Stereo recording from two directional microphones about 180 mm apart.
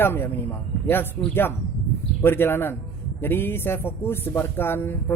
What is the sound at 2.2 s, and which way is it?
Speech, 10° left (ahead or behind).